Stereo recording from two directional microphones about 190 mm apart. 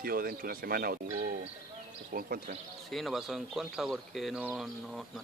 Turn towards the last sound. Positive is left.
turn(degrees=0)  # may be behind; listen again after turning